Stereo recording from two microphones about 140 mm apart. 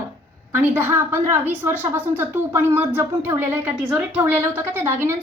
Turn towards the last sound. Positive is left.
turn(degrees=-15)  # may be behind; listen again after turning